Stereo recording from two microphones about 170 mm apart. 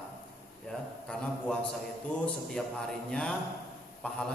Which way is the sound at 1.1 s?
5° left (ahead or behind).